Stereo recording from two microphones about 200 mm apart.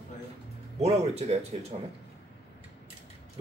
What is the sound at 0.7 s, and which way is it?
Speech, 30° right (ahead or behind).